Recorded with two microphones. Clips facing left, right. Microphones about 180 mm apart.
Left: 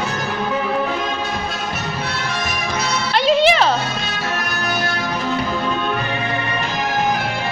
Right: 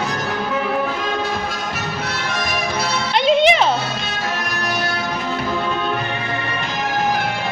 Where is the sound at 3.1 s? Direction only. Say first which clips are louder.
Even; 20° right (ahead or behind).